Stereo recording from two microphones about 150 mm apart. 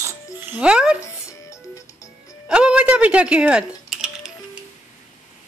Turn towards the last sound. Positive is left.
turn(degrees=-5)  # may be behind; listen again after turning